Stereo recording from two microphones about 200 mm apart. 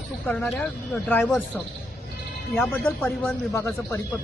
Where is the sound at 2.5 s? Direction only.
5° left (ahead or behind).